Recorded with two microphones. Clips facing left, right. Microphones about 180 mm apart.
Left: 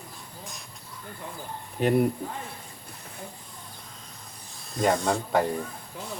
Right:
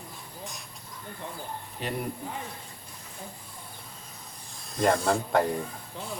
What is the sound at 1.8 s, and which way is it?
Speech, 50° left (ahead or behind).